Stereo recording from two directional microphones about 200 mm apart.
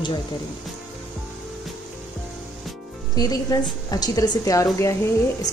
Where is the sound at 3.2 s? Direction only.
20° left (ahead or behind).